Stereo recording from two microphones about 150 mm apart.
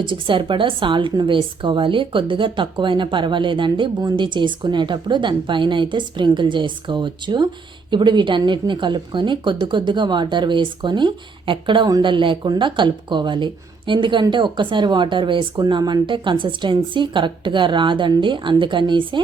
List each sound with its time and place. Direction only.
0.0 s a woman's voice: 35° right (ahead or behind)